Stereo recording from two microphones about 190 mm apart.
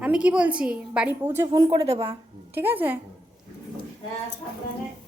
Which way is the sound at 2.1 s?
10° right (ahead or behind).